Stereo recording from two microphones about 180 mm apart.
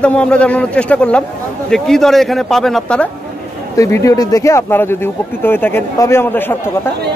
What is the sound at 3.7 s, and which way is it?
Speech, 15° left (ahead or behind).